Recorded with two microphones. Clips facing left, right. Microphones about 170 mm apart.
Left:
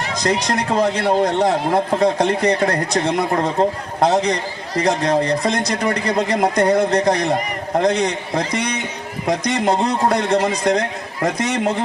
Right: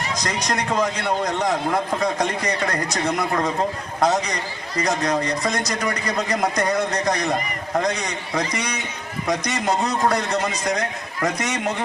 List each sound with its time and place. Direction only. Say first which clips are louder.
0.8 s a man's voice: left 6 dB; 30° left (ahead or behind)